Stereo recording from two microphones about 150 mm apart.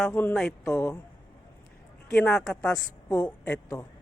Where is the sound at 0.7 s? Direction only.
20° left (ahead or behind).